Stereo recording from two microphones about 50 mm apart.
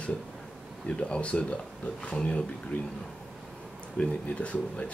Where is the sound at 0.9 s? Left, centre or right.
Left.